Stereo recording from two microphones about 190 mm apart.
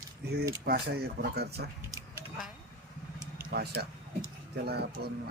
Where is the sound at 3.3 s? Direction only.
55° right (ahead or behind).